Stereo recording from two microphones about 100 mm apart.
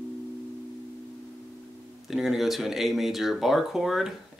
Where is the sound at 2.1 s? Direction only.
5° right (ahead or behind).